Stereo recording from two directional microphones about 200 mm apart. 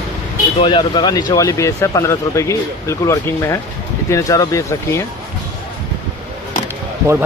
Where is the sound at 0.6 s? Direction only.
20° left (ahead or behind).